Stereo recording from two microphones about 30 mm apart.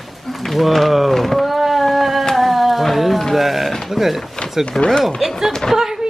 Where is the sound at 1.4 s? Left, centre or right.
Centre.